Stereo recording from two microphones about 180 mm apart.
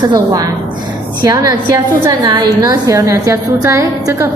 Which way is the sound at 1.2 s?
20° right (ahead or behind).